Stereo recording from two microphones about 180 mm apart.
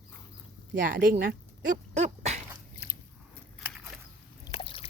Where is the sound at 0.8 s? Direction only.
50° right (ahead or behind).